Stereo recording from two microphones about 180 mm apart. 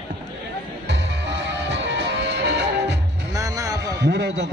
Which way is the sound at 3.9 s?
70° right (ahead or behind).